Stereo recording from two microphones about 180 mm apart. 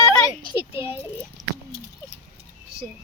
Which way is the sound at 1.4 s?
Centre (ahead or behind).